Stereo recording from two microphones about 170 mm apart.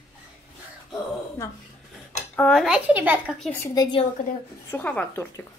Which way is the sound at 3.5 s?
20° left (ahead or behind).